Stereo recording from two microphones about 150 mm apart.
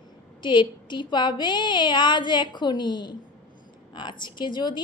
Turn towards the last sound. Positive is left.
turn(degrees=30)  # may be behind; listen again after turning